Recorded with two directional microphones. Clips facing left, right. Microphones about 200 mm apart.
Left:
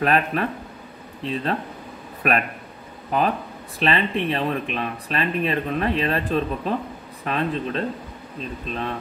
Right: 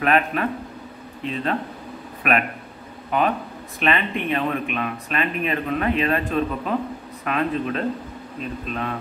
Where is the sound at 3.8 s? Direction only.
35° left (ahead or behind).